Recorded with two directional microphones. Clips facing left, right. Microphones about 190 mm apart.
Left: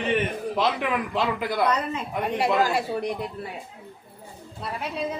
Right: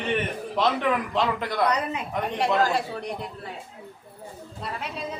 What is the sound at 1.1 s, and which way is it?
Speech, 5° left (ahead or behind).